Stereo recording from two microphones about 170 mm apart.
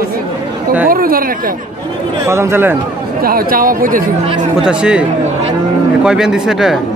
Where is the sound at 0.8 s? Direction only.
60° right (ahead or behind).